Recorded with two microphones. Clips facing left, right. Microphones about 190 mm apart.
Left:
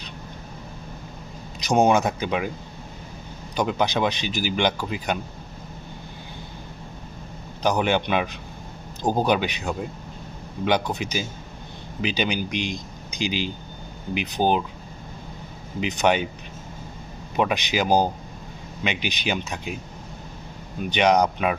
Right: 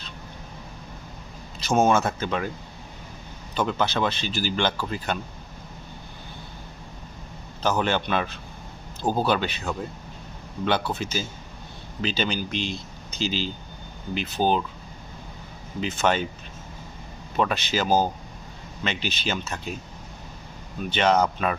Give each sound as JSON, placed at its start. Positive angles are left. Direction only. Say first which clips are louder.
{"t": 1.6, "sound": "speech", "louder": "left 2 dB", "side_deg": 15}
{"t": 3.5, "sound": "speech", "louder": "left 2 dB", "side_deg": 15}
{"t": 7.6, "sound": "speech", "louder": "left 2 dB", "side_deg": 15}
{"t": 15.8, "sound": "speech", "louder": "left 2 dB", "side_deg": 15}
{"t": 17.3, "sound": "speech", "louder": "left 2 dB", "side_deg": 15}
{"t": 20.9, "sound": "speech", "louder": "left 2 dB", "side_deg": 15}